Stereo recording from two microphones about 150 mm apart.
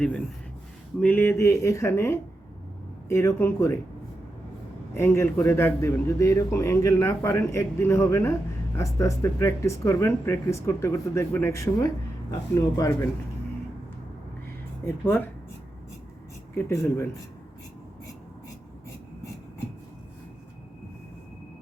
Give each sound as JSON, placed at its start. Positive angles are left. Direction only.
{"t": 0.0, "sound": "speech", "side_deg": 5}
{"t": 4.9, "sound": "speech", "side_deg": 15}
{"t": 14.8, "sound": "speech", "side_deg": 15}
{"t": 16.6, "sound": "speech", "side_deg": 15}